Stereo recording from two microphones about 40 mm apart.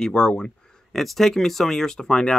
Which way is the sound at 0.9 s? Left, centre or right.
Centre.